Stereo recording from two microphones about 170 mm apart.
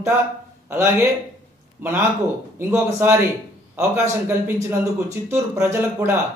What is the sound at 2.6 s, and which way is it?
Speech, 15° right (ahead or behind).